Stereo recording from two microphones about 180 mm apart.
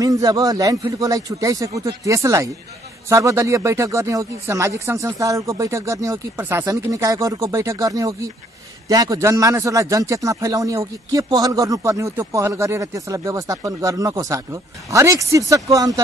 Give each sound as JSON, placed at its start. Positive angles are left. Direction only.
{"t": 0.0, "sound": "a man's voice", "side_deg": -20}